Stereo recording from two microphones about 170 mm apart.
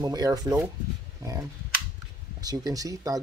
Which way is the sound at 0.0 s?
20° right (ahead or behind).